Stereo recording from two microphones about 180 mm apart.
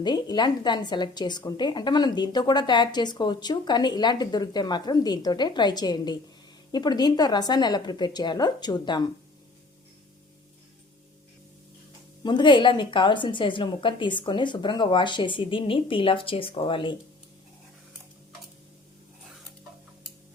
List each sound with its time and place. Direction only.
0.0 s a woman's voice: 25° left (ahead or behind)
12.2 s a woman's voice: 25° left (ahead or behind)